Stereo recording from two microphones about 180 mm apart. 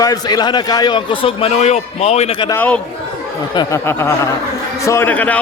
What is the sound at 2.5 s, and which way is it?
A man's voice, 10° left (ahead or behind).